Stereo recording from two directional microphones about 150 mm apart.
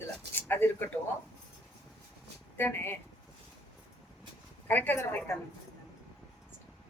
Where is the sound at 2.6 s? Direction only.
15° left (ahead or behind).